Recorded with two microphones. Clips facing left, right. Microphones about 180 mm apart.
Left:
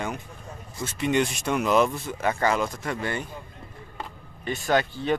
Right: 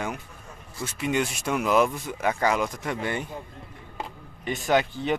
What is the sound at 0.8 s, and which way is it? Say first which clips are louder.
Speech: left 2 dB; 5° right (ahead or behind).